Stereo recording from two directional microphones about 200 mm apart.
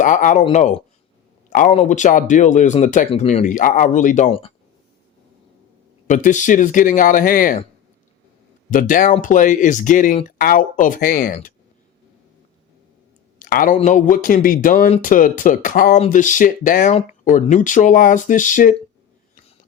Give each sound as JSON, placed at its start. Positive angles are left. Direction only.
{"t": 0.0, "sound": "speech", "side_deg": 40}
{"t": 6.1, "sound": "speech", "side_deg": 40}
{"t": 8.7, "sound": "speech", "side_deg": 40}
{"t": 13.4, "sound": "a sound", "side_deg": 45}
{"t": 13.7, "sound": "speech", "side_deg": 40}